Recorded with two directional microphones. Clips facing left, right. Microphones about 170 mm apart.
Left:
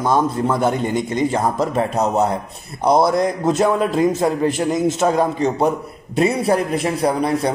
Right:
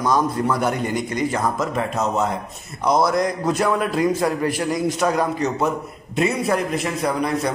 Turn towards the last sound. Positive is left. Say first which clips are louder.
# left 3 dB
turn(degrees=30)  # may be behind; listen again after turning